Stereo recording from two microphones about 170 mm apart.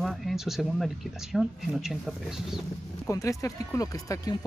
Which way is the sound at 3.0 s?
20° left (ahead or behind).